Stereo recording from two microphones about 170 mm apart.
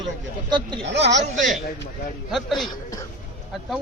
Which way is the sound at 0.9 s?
90° right.